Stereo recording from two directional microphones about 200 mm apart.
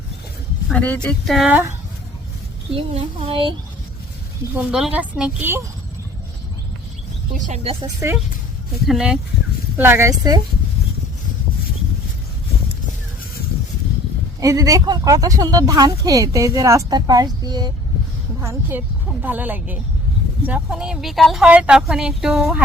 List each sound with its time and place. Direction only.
0.7 s speech: 5° left (ahead or behind)
2.7 s speech: 30° right (ahead or behind)
4.5 s speech: 5° right (ahead or behind)
7.3 s speech: 35° right (ahead or behind)
7.9 s speech: 15° right (ahead or behind)
8.9 s speech: 5° right (ahead or behind)
14.4 s speech: 15° right (ahead or behind)